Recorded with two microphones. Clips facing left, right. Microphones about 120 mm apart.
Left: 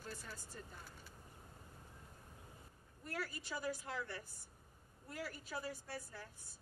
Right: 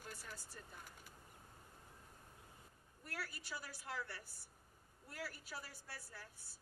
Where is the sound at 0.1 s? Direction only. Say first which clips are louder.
Left 3 dB; 10° right (ahead or behind).